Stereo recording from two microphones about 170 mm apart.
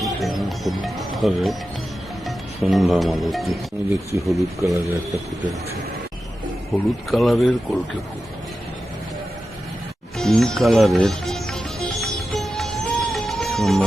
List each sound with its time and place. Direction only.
0.0 s speech: centre (ahead or behind)
3.8 s speech: 15° right (ahead or behind)
7.1 s speech: centre (ahead or behind)
10.2 s music: 5° left (ahead or behind)